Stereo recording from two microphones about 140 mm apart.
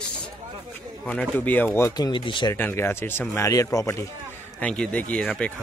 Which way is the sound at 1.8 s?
25° left (ahead or behind).